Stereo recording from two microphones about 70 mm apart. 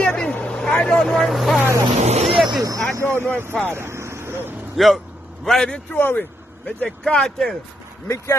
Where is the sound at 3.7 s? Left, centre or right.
Right.